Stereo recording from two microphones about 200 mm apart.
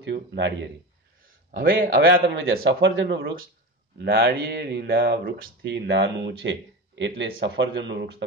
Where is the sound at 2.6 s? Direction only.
65° right (ahead or behind).